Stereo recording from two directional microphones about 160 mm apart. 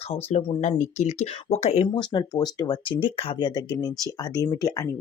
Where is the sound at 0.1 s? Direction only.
45° left (ahead or behind).